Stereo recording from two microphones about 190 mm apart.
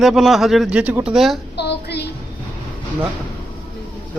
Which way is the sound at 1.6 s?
60° left (ahead or behind).